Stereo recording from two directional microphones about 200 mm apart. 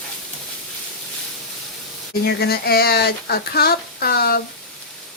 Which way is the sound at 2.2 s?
50° left (ahead or behind).